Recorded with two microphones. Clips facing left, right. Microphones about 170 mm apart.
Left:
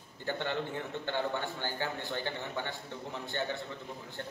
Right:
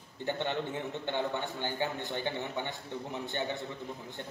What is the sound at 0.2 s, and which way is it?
A man's voice, 20° right (ahead or behind).